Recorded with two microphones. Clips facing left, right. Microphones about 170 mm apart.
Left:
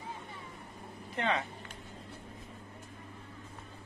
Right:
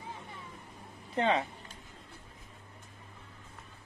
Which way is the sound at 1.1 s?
30° right (ahead or behind).